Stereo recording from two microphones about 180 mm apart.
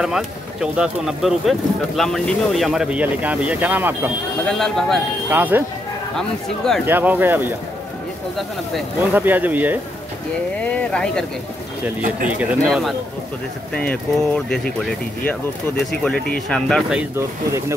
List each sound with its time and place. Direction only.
0.0 s speech: 5° right (ahead or behind)
4.5 s speech: 5° left (ahead or behind)
5.3 s speech: 10° right (ahead or behind)
6.1 s speech: 5° left (ahead or behind)
6.9 s speech: 10° right (ahead or behind)
9.1 s speech: 10° right (ahead or behind)
10.6 s speech: 5° left (ahead or behind)
12.6 s speech: centre (ahead or behind)
16.4 s speech: 5° left (ahead or behind)